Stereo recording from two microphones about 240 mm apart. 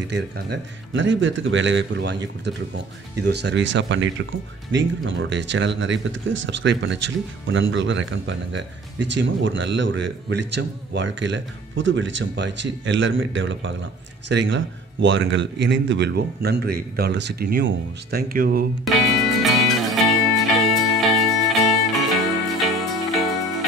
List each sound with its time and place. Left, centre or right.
0.1 s speech: right
3.3 s speech: right
18.9 s music: centre